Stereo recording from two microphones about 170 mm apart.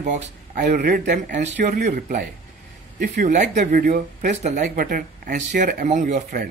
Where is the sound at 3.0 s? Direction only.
45° right (ahead or behind).